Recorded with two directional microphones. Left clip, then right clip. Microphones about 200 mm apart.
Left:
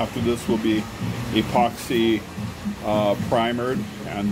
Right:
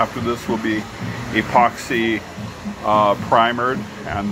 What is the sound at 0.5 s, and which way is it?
Speech, 15° right (ahead or behind).